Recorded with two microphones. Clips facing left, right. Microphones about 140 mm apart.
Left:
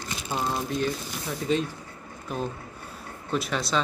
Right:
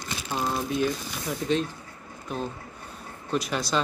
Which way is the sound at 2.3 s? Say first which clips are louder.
Left 1 dB; 5° left (ahead or behind).